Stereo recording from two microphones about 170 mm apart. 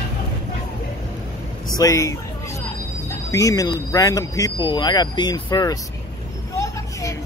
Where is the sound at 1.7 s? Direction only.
20° left (ahead or behind).